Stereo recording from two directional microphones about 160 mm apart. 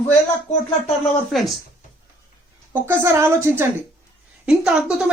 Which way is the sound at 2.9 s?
15° right (ahead or behind).